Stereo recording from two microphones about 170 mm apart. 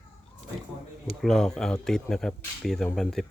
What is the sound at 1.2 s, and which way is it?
Speech, 5° left (ahead or behind).